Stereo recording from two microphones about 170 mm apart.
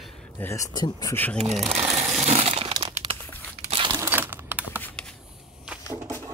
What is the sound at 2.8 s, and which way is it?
Crumpling, 35° right (ahead or behind).